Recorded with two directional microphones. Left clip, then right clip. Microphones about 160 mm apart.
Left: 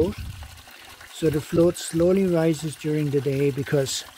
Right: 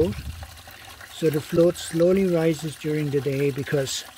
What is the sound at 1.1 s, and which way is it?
Speech, 35° left (ahead or behind).